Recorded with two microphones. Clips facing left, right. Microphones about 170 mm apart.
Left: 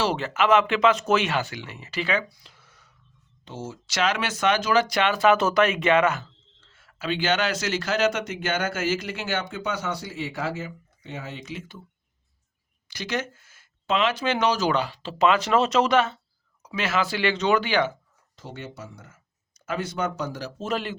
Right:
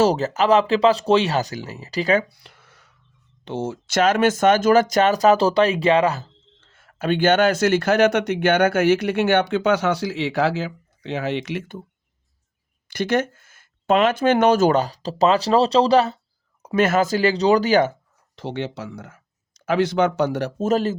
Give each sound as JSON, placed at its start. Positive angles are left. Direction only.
{"t": 0.0, "sound": "speech", "side_deg": -40}
{"t": 2.3, "sound": "a sound", "side_deg": -65}
{"t": 3.4, "sound": "speech", "side_deg": -70}
{"t": 6.6, "sound": "speech", "side_deg": -50}
{"t": 12.9, "sound": "speech", "side_deg": -55}
{"t": 16.6, "sound": "speech", "side_deg": -50}
{"t": 18.3, "sound": "speech", "side_deg": -75}
{"t": 20.6, "sound": "speech", "side_deg": -40}